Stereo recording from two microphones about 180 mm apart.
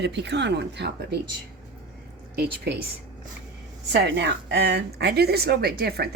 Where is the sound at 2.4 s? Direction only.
65° right (ahead or behind).